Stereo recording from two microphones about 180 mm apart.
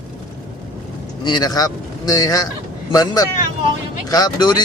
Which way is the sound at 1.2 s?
25° left (ahead or behind).